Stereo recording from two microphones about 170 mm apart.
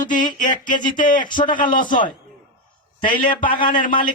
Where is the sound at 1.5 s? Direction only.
55° left (ahead or behind).